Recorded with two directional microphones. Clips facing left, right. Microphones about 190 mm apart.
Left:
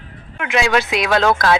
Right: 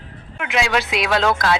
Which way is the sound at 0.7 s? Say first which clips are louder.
Left 3 dB; 55° left (ahead or behind).